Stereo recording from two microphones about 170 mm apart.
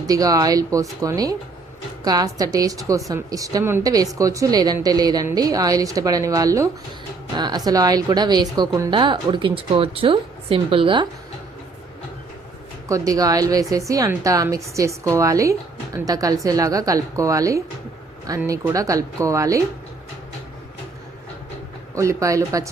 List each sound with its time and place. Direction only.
0.0 s a woman's voice: 20° right (ahead or behind)
12.9 s a woman's voice: 20° right (ahead or behind)
21.9 s a woman's voice: 20° right (ahead or behind)